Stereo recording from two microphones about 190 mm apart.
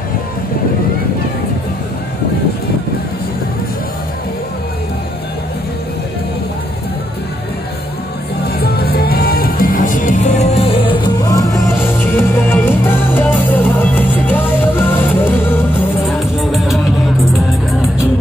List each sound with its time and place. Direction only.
8.5 s music: 55° left (ahead or behind); by 15.6 s 10° left (ahead or behind)
16.3 s music: centre (ahead or behind)